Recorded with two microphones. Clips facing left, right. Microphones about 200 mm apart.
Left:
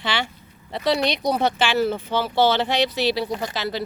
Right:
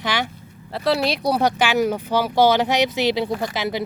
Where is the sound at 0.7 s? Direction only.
Centre (ahead or behind); by 3.8 s 20° right (ahead or behind).